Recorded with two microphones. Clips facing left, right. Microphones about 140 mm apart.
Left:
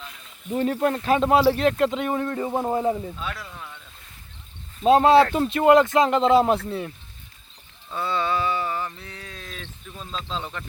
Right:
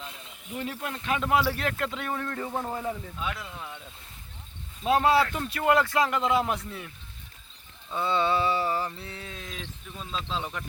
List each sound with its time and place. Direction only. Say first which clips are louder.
0.5 s speech: left 12 dB; 45° left (ahead or behind)
3.2 s speech: left 1 dB; 15° right (ahead or behind)
4.9 s speech: left 7 dB; 25° left (ahead or behind)
7.9 s a sound: even; 25° right (ahead or behind)
10.2 s speech: left 2 dB; 5° right (ahead or behind)